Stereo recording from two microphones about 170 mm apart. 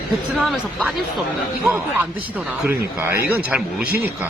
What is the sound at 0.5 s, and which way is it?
Speech, 5° right (ahead or behind).